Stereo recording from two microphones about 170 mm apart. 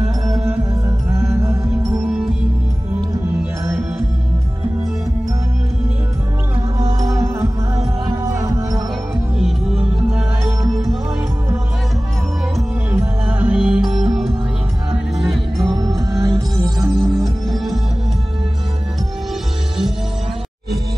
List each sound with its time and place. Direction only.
0.3 s music: 5° right (ahead or behind)
1.3 s music: 15° right (ahead or behind)
2.0 s music: 5° right (ahead or behind)
7.0 s music: 20° right (ahead or behind)
9.9 s music: 5° right (ahead or behind)
12.9 s music: 10° right (ahead or behind)
15.7 s music: 20° right (ahead or behind)
16.9 s music: centre (ahead or behind)